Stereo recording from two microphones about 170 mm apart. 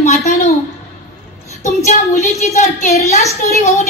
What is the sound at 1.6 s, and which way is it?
Child singing, 45° left (ahead or behind).